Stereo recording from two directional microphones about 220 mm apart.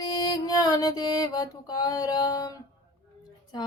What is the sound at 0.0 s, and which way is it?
Music, 20° left (ahead or behind).